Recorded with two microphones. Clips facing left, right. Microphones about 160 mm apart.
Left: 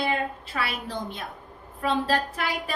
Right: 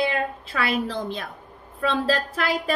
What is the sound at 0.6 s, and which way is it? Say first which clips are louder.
A woman's voice: right 8 dB; 90° right.